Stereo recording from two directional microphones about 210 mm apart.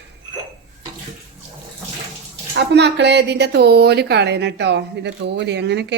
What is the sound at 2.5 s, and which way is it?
A woman's voice, 55° right (ahead or behind).